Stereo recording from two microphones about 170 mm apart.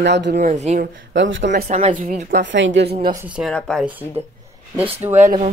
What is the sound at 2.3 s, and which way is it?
Speech, 90° right.